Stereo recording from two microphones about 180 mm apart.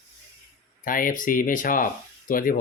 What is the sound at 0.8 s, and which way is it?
Speech, 50° left (ahead or behind).